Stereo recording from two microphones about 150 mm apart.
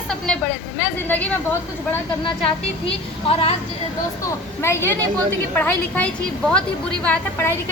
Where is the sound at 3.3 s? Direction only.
40° left (ahead or behind).